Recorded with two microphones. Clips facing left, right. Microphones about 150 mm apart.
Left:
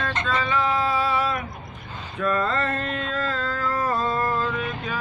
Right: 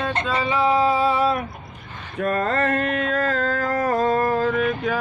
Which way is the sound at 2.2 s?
40° right (ahead or behind).